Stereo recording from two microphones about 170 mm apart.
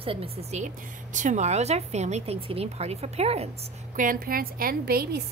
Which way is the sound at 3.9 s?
55° right (ahead or behind).